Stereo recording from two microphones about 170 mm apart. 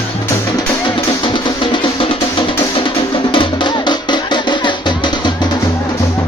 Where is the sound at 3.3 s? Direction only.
25° left (ahead or behind).